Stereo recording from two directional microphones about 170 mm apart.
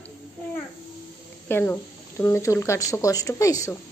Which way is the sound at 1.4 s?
10° left (ahead or behind).